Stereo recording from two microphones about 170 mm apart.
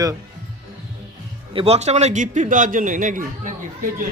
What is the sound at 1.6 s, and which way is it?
A man's voice, 35° right (ahead or behind).